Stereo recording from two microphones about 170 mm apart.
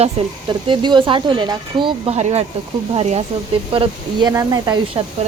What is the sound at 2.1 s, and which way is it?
Speech, 40° right (ahead or behind).